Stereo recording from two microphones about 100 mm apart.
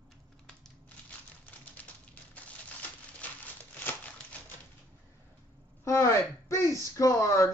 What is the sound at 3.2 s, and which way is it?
Crumpling, 15° left (ahead or behind).